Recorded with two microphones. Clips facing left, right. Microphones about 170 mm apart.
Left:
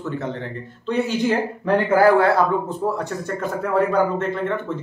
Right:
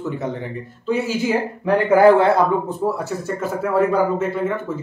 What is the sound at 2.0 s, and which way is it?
Speech, 20° right (ahead or behind).